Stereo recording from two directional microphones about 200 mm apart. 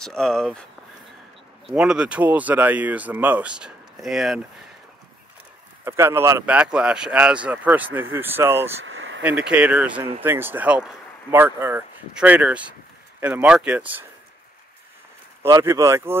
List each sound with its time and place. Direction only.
0.0 s speech: 5° left (ahead or behind)
1.7 s speech: 5° right (ahead or behind)
5.9 s speech: 10° right (ahead or behind)
8.8 s vehicle: 75° right (ahead or behind)
9.2 s speech: 5° right (ahead or behind)
15.4 s speech: 15° right (ahead or behind)